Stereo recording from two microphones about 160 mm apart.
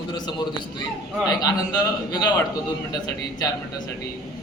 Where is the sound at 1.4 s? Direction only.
25° left (ahead or behind).